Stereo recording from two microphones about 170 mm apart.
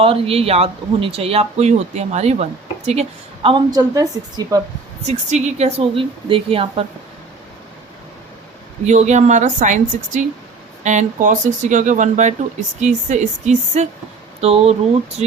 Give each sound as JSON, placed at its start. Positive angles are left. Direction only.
{"t": 0.0, "sound": "speech", "side_deg": -35}
{"t": 3.7, "sound": "a woman's voice", "side_deg": -20}
{"t": 5.0, "sound": "speech", "side_deg": -40}
{"t": 8.9, "sound": "speech", "side_deg": -45}